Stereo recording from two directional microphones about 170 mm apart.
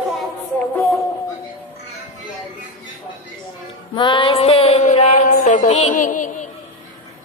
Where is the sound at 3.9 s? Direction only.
30° left (ahead or behind); by 6.4 s 50° left (ahead or behind).